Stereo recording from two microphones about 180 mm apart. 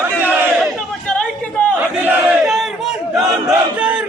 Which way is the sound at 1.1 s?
5° left (ahead or behind).